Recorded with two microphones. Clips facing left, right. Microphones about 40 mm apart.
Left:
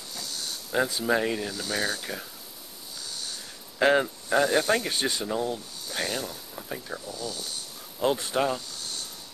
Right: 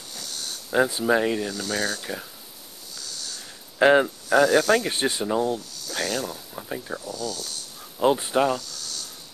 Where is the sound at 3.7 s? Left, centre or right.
Centre.